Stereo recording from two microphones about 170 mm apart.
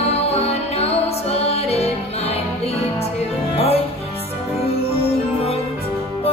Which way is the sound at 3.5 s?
35° left (ahead or behind).